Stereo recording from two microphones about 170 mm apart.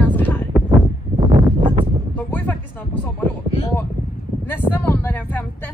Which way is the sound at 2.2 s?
10° left (ahead or behind).